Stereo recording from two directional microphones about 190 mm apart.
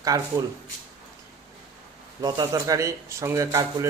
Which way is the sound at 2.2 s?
20° right (ahead or behind).